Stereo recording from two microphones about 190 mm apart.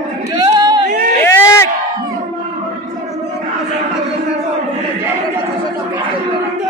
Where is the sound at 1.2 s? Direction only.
15° left (ahead or behind).